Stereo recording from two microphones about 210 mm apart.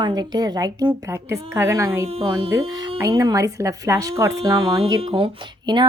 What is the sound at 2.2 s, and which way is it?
Speech, 25° right (ahead or behind).